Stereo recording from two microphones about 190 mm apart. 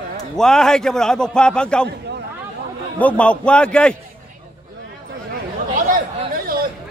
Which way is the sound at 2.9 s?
5° left (ahead or behind).